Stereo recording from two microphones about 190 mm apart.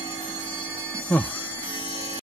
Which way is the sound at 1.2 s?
25° left (ahead or behind).